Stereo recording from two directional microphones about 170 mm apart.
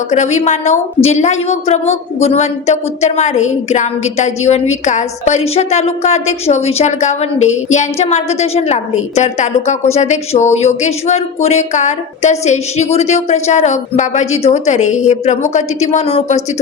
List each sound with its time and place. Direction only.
0.1 s a woman's voice: 45° left (ahead or behind)